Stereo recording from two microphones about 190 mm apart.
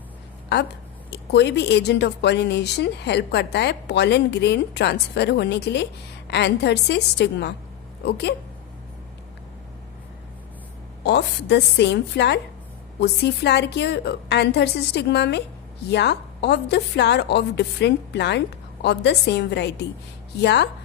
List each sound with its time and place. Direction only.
1.1 s a woman's voice: 65° left (ahead or behind)
11.0 s a woman's voice: 60° left (ahead or behind)